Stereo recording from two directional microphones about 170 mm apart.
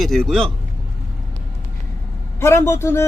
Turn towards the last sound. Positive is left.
turn(degrees=15)  # may be behind; listen again after turning